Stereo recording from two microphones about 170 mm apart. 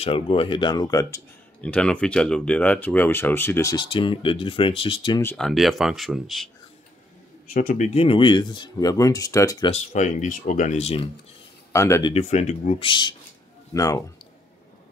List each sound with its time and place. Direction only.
0.0 s speech: 30° left (ahead or behind)
1.6 s speech: 5° left (ahead or behind)
3.7 s speech: 30° left (ahead or behind)
5.2 s speech: 10° left (ahead or behind)
5.5 s speech: centre (ahead or behind)
7.5 s speech: 50° left (ahead or behind); by 9.7 s 20° left (ahead or behind)
9.7 s speech: 45° left (ahead or behind)
11.7 s speech: 15° left (ahead or behind)
12.1 s speech: 40° left (ahead or behind); by 14.0 s 20° left (ahead or behind)